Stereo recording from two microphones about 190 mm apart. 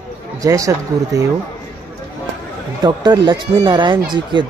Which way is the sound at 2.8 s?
20° right (ahead or behind).